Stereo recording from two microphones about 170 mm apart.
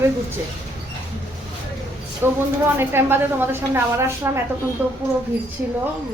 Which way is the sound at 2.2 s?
15° right (ahead or behind).